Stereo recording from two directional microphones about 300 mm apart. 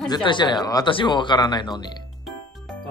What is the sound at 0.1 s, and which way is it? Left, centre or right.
Speech, centre.